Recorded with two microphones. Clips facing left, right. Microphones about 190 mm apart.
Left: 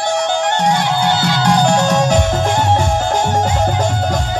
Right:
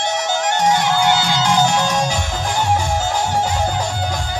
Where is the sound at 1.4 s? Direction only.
65° left (ahead or behind).